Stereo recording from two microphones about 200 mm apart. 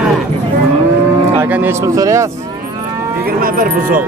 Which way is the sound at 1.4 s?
10° right (ahead or behind).